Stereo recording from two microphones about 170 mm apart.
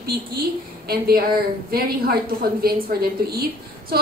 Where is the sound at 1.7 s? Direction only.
65° right (ahead or behind).